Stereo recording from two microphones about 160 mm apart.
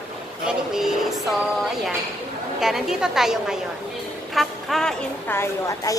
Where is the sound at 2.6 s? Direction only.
5° right (ahead or behind).